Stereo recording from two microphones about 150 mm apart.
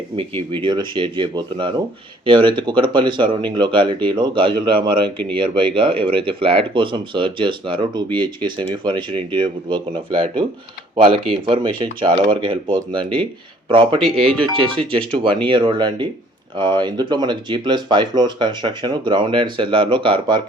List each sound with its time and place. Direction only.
0.2 s speech: 35° right (ahead or behind)